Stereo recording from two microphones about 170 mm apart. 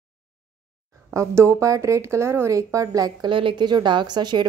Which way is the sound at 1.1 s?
15° right (ahead or behind).